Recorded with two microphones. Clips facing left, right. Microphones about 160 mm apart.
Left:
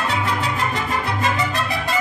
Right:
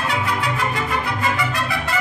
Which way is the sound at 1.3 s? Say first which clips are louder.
Even; 20° left (ahead or behind).